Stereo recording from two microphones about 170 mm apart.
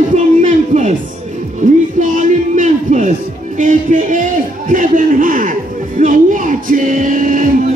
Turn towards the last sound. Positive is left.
turn(degrees=-50)  # may be behind; listen again after turning